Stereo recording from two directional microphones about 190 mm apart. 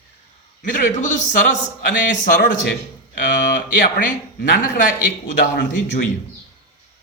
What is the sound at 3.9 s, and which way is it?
A man's voice, 50° left (ahead or behind).